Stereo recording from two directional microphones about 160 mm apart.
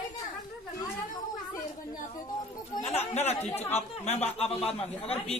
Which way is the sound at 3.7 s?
40° left (ahead or behind).